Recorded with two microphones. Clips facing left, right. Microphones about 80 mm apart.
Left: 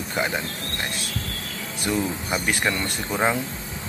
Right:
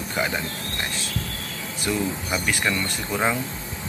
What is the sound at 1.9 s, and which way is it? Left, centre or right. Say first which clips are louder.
Speech: left 1 dB; left.